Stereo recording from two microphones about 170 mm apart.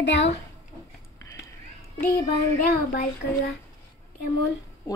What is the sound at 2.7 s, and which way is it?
Child singing, 65° left (ahead or behind).